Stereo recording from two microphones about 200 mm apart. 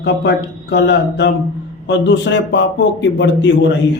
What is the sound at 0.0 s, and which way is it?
Speech, 60° left (ahead or behind).